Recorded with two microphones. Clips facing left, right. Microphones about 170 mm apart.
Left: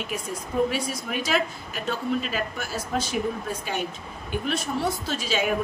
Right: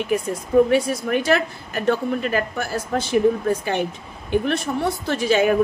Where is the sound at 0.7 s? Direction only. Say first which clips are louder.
Right 9 dB; 60° right (ahead or behind).